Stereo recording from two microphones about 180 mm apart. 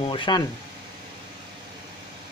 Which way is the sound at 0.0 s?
30° left (ahead or behind).